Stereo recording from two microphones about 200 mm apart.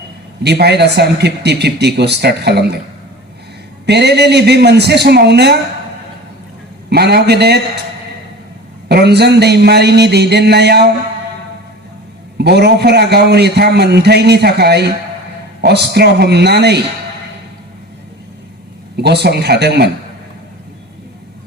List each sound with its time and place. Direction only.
0.4 s a man's voice: 55° right (ahead or behind)
3.8 s a man's voice: 55° right (ahead or behind)
6.9 s a man's voice: 55° right (ahead or behind)
8.9 s a man's voice: 55° right (ahead or behind)
12.4 s a man's voice: 55° right (ahead or behind)
18.9 s a man's voice: 55° right (ahead or behind)